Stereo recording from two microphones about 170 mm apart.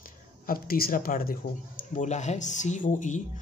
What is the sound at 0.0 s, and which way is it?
Speech, 60° left (ahead or behind).